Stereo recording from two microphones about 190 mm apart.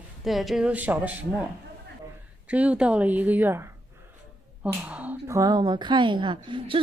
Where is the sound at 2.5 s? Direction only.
5° right (ahead or behind); by 6.8 s 25° right (ahead or behind).